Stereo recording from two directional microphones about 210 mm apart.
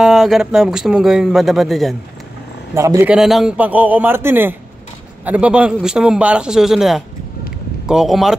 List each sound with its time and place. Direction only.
0.0 s speech: centre (ahead or behind)
2.7 s a man's voice: 15° right (ahead or behind)